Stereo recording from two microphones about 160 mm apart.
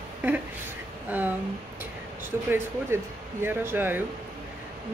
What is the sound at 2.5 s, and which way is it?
Speech, 15° right (ahead or behind).